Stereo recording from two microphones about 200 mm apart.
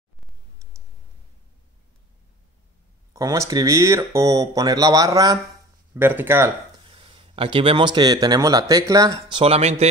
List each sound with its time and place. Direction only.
3.1 s speech: 15° right (ahead or behind)
6.9 s speech: 25° right (ahead or behind)
9.4 s speech: 30° right (ahead or behind)